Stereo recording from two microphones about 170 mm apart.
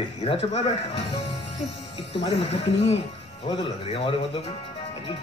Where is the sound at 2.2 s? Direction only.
35° left (ahead or behind).